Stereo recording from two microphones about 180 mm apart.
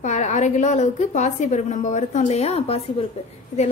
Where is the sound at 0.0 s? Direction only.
40° left (ahead or behind).